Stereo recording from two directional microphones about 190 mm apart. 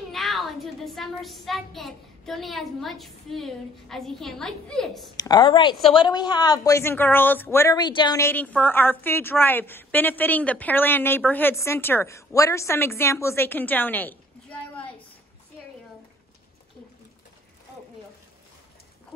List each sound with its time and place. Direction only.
0.1 s a child's voice: centre (ahead or behind)
5.1 s a woman's voice: 25° left (ahead or behind)